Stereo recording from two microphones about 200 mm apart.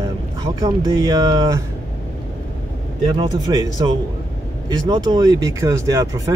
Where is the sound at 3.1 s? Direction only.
20° right (ahead or behind).